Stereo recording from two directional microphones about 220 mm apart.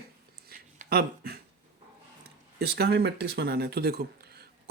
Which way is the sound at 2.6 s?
45° right (ahead or behind).